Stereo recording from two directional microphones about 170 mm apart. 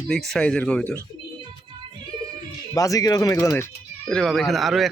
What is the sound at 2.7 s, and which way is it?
Speech, 20° left (ahead or behind).